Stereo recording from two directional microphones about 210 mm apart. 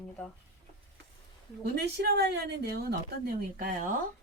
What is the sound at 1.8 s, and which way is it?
Speech, 50° right (ahead or behind).